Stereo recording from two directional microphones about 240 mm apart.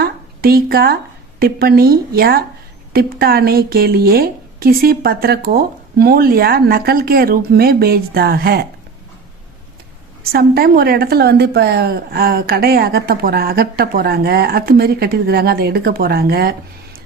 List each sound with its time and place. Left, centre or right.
0.0 s a sound: right
1.4 s a woman's voice: right
10.3 s a woman's voice: right